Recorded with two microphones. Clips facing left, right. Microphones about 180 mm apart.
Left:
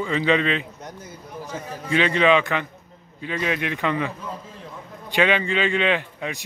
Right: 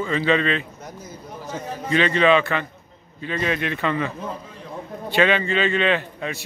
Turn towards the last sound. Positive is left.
turn(degrees=15)  # may be behind; listen again after turning